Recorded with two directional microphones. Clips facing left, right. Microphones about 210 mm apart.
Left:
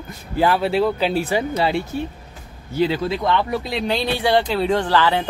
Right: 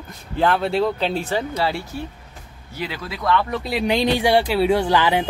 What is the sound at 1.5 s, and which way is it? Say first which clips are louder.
Speech: left 3 dB; 20° left (ahead or behind).